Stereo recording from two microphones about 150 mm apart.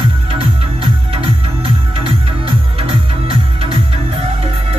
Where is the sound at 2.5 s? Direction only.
40° right (ahead or behind).